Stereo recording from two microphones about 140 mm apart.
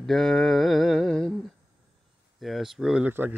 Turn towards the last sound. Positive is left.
turn(degrees=-15)  # may be behind; listen again after turning